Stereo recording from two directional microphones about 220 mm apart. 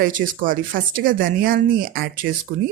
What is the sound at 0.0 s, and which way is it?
Speech, 35° right (ahead or behind).